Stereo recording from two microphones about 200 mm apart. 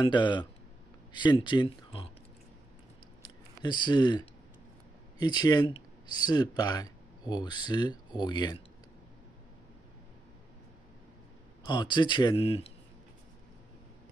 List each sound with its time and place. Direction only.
0.0 s speech: 25° left (ahead or behind)
3.2 s a sound: 20° left (ahead or behind)
5.2 s speech: 20° left (ahead or behind)
11.6 s speech: 20° left (ahead or behind)